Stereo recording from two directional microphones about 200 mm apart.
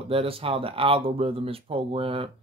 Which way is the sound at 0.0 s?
30° right (ahead or behind).